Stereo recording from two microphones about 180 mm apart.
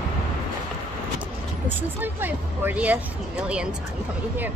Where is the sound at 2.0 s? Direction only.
10° right (ahead or behind).